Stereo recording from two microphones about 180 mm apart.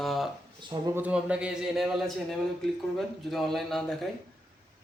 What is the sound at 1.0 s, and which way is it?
A man's voice, 5° right (ahead or behind).